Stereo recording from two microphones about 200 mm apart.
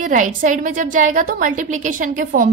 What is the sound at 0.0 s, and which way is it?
A woman's voice, 40° right (ahead or behind).